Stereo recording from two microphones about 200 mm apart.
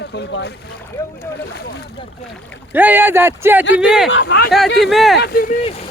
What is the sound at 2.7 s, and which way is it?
Speech, 10° right (ahead or behind).